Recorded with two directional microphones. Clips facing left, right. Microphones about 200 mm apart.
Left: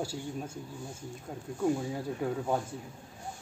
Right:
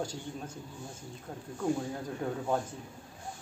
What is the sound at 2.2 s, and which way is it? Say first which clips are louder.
Speech: left 2 dB; 5° left (ahead or behind).